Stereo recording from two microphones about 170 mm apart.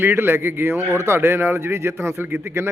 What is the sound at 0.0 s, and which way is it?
A man's voice, 15° right (ahead or behind).